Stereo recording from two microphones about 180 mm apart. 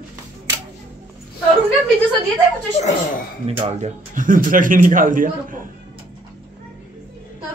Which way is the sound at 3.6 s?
40° right (ahead or behind).